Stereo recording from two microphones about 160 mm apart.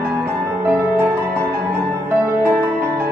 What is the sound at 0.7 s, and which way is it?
Music, 10° right (ahead or behind).